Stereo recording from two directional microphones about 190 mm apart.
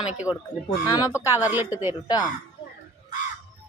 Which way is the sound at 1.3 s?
10° right (ahead or behind).